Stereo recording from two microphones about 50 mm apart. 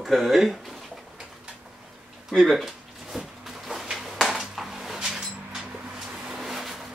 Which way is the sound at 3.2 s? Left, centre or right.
Centre.